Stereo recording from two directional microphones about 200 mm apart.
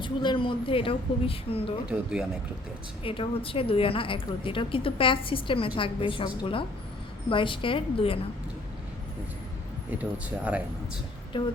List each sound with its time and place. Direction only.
0.0 s a woman's voice: 25° left (ahead or behind)
1.9 s speech: 5° right (ahead or behind)
3.0 s a woman's voice: 25° left (ahead or behind)
10.0 s speech: 5° right (ahead or behind)
11.3 s a woman's voice: 25° left (ahead or behind)